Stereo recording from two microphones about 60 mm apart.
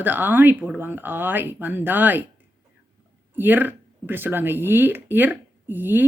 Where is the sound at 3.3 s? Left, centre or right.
Right.